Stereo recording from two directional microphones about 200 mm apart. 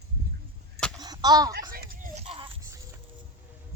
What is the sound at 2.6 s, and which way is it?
Music, 15° right (ahead or behind).